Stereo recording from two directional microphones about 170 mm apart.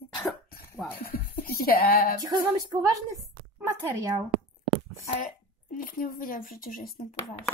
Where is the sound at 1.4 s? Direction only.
60° left (ahead or behind).